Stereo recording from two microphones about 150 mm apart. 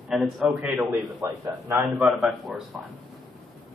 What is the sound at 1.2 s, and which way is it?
Speech, 20° right (ahead or behind).